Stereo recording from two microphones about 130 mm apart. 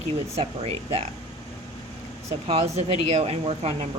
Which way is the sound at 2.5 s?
50° right (ahead or behind).